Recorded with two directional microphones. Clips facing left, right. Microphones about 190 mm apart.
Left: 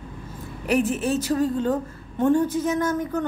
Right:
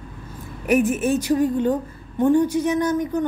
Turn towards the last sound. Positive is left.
turn(degrees=-15)  # may be behind; listen again after turning